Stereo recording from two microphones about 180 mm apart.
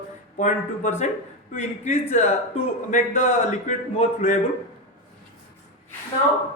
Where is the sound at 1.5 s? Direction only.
40° left (ahead or behind).